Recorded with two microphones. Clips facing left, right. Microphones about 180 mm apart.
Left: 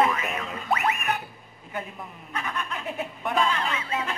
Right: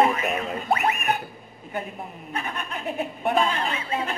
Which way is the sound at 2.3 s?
30° right (ahead or behind).